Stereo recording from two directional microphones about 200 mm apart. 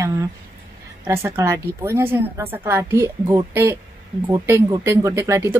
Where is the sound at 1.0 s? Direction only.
15° right (ahead or behind).